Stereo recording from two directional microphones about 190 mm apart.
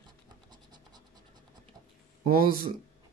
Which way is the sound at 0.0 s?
20° right (ahead or behind).